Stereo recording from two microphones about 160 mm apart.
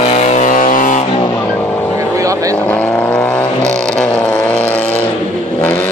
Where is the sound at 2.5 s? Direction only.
10° left (ahead or behind).